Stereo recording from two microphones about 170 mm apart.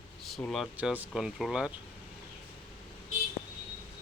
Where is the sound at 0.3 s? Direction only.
Centre (ahead or behind).